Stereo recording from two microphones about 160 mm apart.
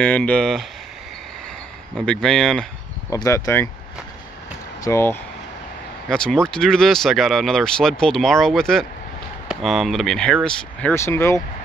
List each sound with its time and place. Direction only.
0.0 s speech: 5° left (ahead or behind)
2.0 s speech: 5° left (ahead or behind)
3.1 s speech: 20° left (ahead or behind)
4.8 s speech: 15° left (ahead or behind)
6.0 s speech: 5° left (ahead or behind)